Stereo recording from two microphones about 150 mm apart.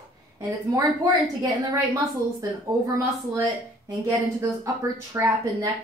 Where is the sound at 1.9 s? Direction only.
20° right (ahead or behind).